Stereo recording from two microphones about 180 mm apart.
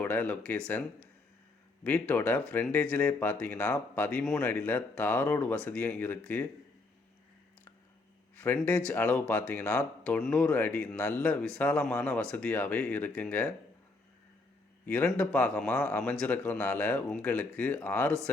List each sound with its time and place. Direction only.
0.0 s speech: 10° left (ahead or behind)
1.8 s speech: 10° left (ahead or behind)
8.4 s speech: 10° left (ahead or behind)
14.8 s speech: 10° left (ahead or behind)